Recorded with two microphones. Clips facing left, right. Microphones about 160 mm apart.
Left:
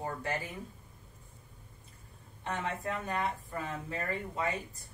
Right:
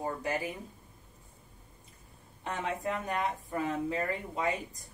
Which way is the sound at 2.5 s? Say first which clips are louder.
Right 2 dB; 15° right (ahead or behind).